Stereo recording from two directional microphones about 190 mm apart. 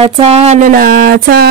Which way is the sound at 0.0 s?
35° right (ahead or behind).